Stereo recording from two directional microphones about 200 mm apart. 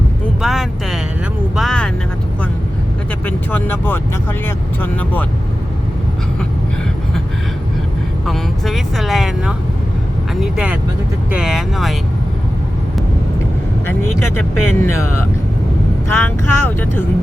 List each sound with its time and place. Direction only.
0.4 s music: centre (ahead or behind)
1.5 s vehicle: centre (ahead or behind)
3.2 s speech: 10° left (ahead or behind)
8.3 s speech: centre (ahead or behind)
14.3 s speech: 90° left
16.0 s speech: 10° left (ahead or behind)